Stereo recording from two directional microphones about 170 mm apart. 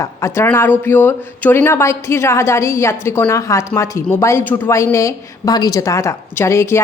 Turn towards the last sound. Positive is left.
turn(degrees=15)  # may be behind; listen again after turning